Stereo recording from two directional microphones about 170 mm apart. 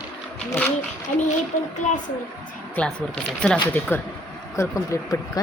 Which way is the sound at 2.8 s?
10° left (ahead or behind).